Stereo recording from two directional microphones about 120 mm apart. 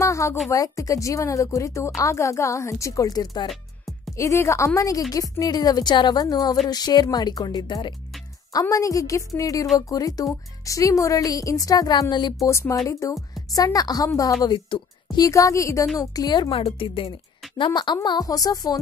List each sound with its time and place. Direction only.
0.0 s speech: 25° left (ahead or behind)
3.4 s music: centre (ahead or behind)
4.2 s a woman's voice: 25° left (ahead or behind)
8.5 s speech: 30° left (ahead or behind)
12.4 s a woman's voice: 25° left (ahead or behind)